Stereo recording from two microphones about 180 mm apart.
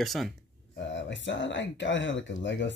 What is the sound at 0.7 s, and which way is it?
Speech, 90° left.